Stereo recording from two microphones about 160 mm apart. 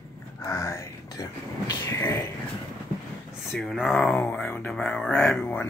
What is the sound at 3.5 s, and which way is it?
Speech, centre (ahead or behind).